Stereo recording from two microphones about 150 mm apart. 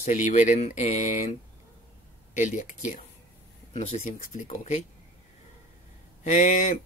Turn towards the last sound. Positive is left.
turn(degrees=60)  # may be behind; listen again after turning